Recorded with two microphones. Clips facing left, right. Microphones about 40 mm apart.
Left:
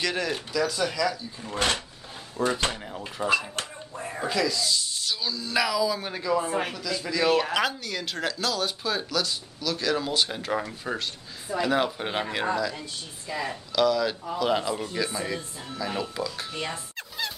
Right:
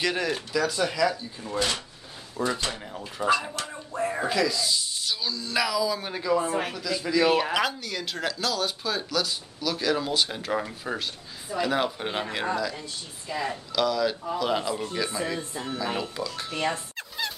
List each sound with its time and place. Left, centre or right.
0.0 s speech: centre
1.5 s speech: left
2.4 s speech: centre
3.9 s music: right
4.2 s speech: centre
15.5 s speech: right
16.0 s speech: centre